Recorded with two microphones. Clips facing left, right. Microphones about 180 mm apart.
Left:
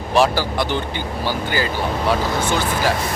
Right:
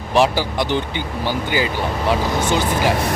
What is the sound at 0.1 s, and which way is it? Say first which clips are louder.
Speech: even; 15° right (ahead or behind).